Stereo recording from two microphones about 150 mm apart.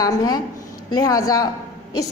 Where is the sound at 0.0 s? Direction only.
25° left (ahead or behind).